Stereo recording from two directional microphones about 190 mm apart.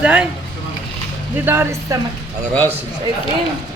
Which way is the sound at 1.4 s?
10° right (ahead or behind).